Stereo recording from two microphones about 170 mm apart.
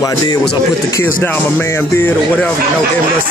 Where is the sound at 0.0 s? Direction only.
20° left (ahead or behind).